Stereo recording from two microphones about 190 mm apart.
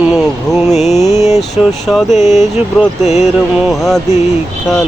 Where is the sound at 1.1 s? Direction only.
35° left (ahead or behind).